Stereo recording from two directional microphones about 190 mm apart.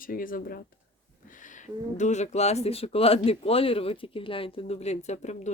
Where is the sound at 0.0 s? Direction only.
45° left (ahead or behind).